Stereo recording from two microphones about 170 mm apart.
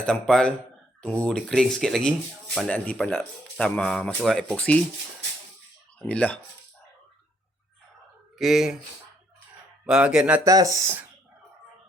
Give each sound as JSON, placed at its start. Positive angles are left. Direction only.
{"t": 0.0, "sound": "speech", "side_deg": 5}
{"t": 6.0, "sound": "speech", "side_deg": 5}
{"t": 8.4, "sound": "speech", "side_deg": 0}
{"t": 9.8, "sound": "speech", "side_deg": -5}
{"t": 10.4, "sound": "speech", "side_deg": -20}